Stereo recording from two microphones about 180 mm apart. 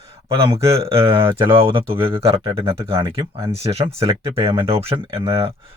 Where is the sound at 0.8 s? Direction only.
30° right (ahead or behind).